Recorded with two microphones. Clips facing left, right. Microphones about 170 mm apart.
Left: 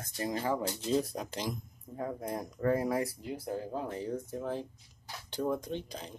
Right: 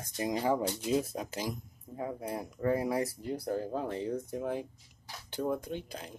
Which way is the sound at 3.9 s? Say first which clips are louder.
Right 2 dB; 20° right (ahead or behind).